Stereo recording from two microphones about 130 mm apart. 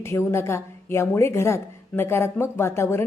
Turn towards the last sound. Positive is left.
turn(degrees=20)  # may be behind; listen again after turning